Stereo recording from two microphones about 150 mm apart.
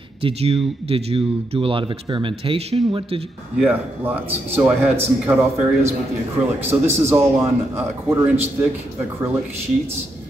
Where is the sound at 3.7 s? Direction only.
15° right (ahead or behind).